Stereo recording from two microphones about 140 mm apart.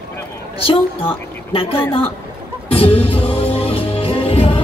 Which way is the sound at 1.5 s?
40° left (ahead or behind).